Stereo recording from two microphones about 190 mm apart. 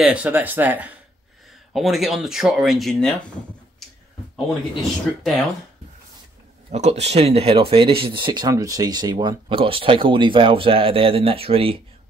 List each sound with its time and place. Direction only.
0.0 s speech: 5° right (ahead or behind)
5.2 s speech: centre (ahead or behind)
6.7 s speech: 35° right (ahead or behind)